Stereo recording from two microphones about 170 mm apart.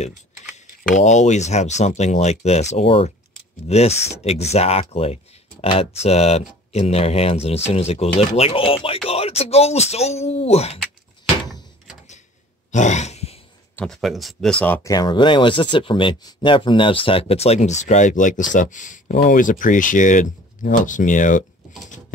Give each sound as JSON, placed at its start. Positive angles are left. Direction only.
{"t": 0.9, "sound": "speech", "side_deg": 45}
{"t": 12.7, "sound": "grunt", "side_deg": 45}
{"t": 13.7, "sound": "speech", "side_deg": 0}
{"t": 14.9, "sound": "speech", "side_deg": 25}